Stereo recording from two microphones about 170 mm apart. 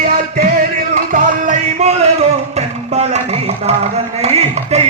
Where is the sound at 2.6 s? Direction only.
40° right (ahead or behind).